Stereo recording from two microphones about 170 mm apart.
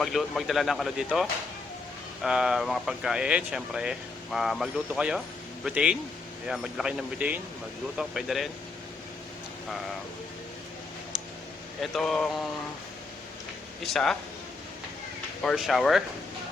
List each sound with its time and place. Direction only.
0.0 s speech: centre (ahead or behind)
11.8 s speech: centre (ahead or behind)
13.8 s speech: centre (ahead or behind)
15.4 s speech: centre (ahead or behind)